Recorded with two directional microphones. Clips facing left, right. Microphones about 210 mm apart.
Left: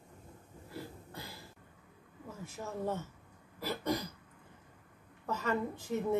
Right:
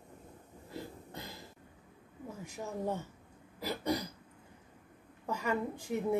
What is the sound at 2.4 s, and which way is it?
A woman's voice, 15° right (ahead or behind).